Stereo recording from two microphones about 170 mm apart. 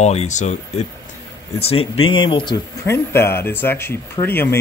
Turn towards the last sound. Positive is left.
turn(degrees=10)  # may be behind; listen again after turning